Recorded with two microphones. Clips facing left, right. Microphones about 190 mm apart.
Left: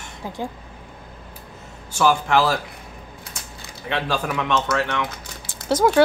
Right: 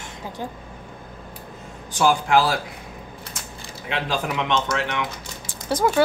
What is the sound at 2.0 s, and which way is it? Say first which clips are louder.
Speech: even; 15° right (ahead or behind).